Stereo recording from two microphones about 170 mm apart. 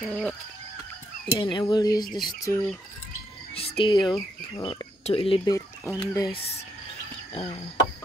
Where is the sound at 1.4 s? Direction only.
25° left (ahead or behind).